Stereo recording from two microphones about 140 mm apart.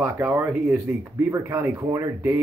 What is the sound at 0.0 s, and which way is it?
Speech, 15° right (ahead or behind).